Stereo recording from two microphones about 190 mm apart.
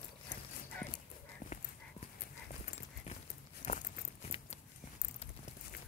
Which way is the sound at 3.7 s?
30° left (ahead or behind).